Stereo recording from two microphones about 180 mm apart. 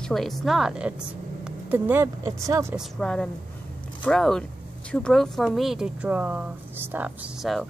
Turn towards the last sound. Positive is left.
turn(degrees=0)  # may be behind; listen again after turning